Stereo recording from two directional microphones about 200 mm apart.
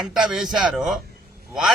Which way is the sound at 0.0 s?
Centre (ahead or behind).